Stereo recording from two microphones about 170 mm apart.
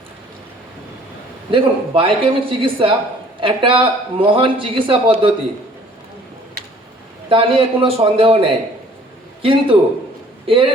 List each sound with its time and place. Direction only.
1.5 s a man's voice: 30° right (ahead or behind)
7.3 s a man's voice: 30° right (ahead or behind)